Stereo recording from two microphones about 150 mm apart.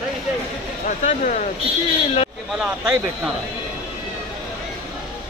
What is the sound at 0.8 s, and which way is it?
Speech, 55° left (ahead or behind).